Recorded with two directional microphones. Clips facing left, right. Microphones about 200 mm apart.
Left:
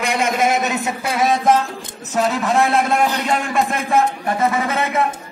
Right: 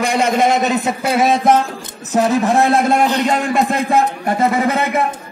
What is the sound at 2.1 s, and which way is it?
A man's voice, 20° right (ahead or behind).